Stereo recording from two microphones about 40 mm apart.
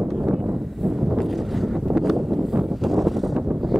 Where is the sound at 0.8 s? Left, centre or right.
Centre.